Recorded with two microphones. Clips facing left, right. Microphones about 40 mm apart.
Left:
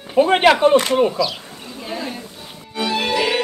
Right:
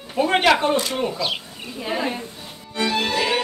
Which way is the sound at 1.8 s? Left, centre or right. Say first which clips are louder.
Right 3 dB; right.